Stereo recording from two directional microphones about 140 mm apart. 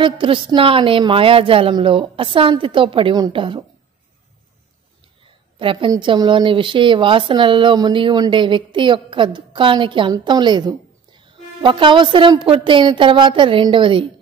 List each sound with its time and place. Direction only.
0.0 s a woman's voice: 35° right (ahead or behind)
5.6 s a woman's voice: 40° right (ahead or behind)